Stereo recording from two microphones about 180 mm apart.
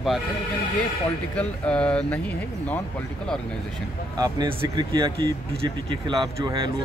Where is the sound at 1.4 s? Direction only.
5° left (ahead or behind).